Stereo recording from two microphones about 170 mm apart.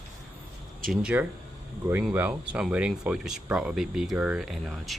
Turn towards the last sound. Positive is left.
turn(degrees=0)  # may be behind; listen again after turning